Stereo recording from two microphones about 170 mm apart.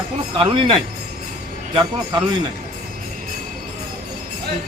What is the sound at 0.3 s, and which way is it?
Speech, 30° right (ahead or behind).